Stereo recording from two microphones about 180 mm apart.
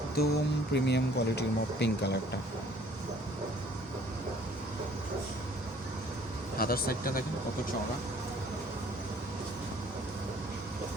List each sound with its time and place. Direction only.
0.2 s speech: 60° left (ahead or behind)
0.7 s speech: 70° left (ahead or behind)
6.6 s speech: 55° left (ahead or behind)